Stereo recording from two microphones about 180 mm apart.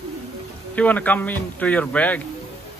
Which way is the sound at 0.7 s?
10° left (ahead or behind).